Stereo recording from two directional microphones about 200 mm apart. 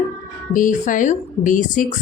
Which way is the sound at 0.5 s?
40° left (ahead or behind).